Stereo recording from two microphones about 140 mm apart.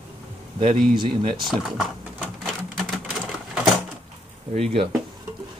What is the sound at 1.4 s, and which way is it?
Sewing machine, 5° right (ahead or behind).